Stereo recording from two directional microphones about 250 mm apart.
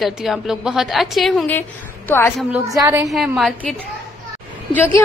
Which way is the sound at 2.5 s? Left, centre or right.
Centre.